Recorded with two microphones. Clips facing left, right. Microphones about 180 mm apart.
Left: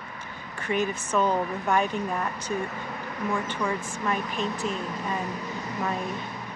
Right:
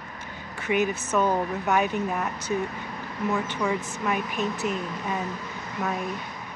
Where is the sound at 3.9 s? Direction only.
10° right (ahead or behind).